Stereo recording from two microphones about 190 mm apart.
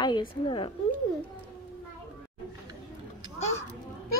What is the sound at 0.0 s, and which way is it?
Speech, 25° left (ahead or behind).